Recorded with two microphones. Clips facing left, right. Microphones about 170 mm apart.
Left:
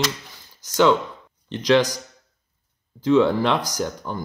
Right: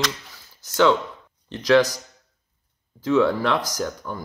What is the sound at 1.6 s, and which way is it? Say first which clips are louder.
Speech: right 1 dB; 15° left (ahead or behind).